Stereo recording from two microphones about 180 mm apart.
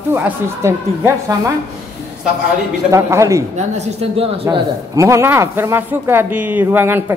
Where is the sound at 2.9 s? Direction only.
15° right (ahead or behind).